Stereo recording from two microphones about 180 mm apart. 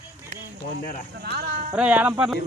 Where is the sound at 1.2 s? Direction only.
55° right (ahead or behind).